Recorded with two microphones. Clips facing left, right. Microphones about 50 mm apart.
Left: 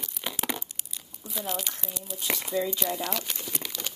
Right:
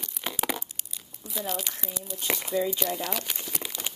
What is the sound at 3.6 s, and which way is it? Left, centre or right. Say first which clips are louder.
Crumpling: right 3 dB; centre.